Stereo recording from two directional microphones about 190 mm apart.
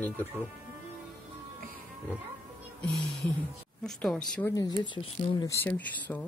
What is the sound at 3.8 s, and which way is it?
Speech, centre (ahead or behind).